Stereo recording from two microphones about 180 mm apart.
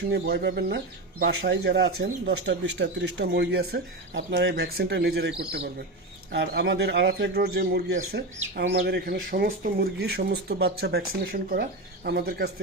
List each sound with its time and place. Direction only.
0.1 s speech: 65° right (ahead or behind)
8.1 s speech: 75° right (ahead or behind)
8.8 s speech: 55° right (ahead or behind)